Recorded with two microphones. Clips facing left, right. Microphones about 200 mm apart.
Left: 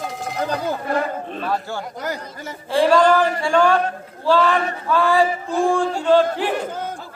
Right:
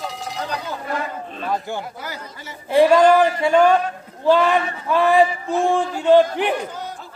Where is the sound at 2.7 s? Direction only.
20° right (ahead or behind).